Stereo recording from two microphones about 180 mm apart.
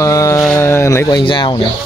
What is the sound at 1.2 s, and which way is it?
Speech, 25° left (ahead or behind).